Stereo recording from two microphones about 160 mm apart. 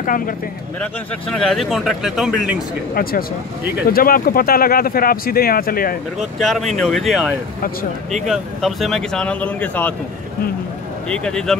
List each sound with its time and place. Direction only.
1.3 s speech: centre (ahead or behind)
2.9 s speech: 70° left (ahead or behind)
6.1 s speech: centre (ahead or behind)
11.1 s speech: 5° left (ahead or behind)